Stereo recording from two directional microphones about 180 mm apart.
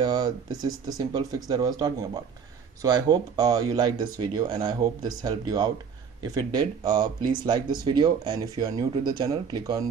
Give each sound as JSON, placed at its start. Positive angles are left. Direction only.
{"t": 0.0, "sound": "speech", "side_deg": -20}